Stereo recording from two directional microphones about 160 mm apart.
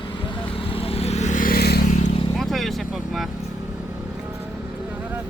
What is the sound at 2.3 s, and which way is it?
Speech, centre (ahead or behind).